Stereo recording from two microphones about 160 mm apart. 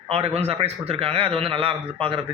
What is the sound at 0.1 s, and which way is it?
A man's voice, 40° right (ahead or behind).